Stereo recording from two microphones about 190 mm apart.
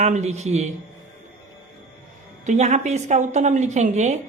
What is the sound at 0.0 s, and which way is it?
Speech, 35° right (ahead or behind).